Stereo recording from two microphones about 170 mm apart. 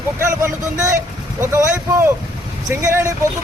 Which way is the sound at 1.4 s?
15° right (ahead or behind).